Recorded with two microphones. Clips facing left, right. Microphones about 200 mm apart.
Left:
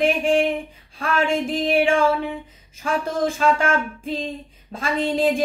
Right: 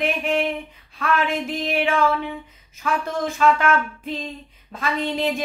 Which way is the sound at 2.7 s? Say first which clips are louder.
Left 1 dB; 30° left (ahead or behind).